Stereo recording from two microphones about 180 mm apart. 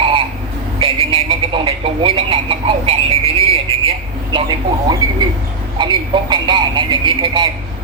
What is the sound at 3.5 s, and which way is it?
Vehicle, 30° right (ahead or behind).